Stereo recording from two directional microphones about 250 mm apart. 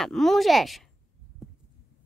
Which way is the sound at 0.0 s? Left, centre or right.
Centre.